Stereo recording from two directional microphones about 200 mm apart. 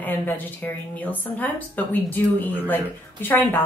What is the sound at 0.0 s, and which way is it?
A woman's voice, 10° left (ahead or behind).